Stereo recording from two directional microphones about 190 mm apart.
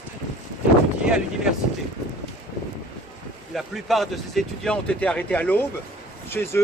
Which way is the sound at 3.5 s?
Centre (ahead or behind).